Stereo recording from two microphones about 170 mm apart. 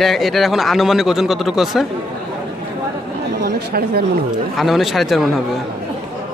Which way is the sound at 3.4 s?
70° right (ahead or behind).